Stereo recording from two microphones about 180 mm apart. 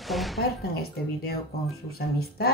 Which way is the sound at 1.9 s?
60° left (ahead or behind).